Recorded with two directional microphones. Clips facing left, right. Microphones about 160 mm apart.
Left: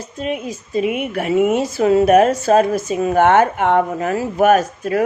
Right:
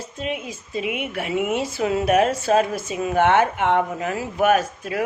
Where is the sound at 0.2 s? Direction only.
40° left (ahead or behind).